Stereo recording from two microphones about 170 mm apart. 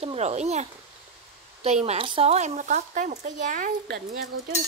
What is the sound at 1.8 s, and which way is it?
Speech, 30° right (ahead or behind).